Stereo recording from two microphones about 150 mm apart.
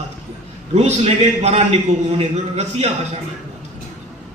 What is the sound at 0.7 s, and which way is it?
A man's voice, 45° right (ahead or behind).